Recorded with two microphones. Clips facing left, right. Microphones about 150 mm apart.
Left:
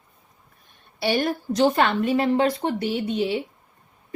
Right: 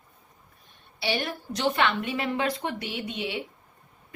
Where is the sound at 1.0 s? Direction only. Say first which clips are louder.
Left 7 dB; 45° left (ahead or behind).